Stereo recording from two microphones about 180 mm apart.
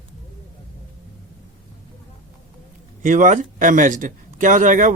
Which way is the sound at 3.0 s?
45° right (ahead or behind).